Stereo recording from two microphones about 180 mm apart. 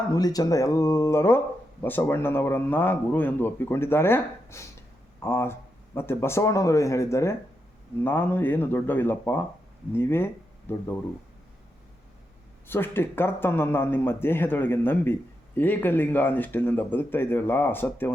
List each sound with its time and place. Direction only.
0.1 s a man's voice: 20° left (ahead or behind)
12.6 s a man's voice: 10° left (ahead or behind)